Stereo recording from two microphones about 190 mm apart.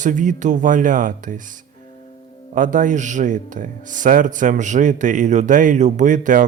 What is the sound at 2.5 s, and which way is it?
Speech, 45° right (ahead or behind).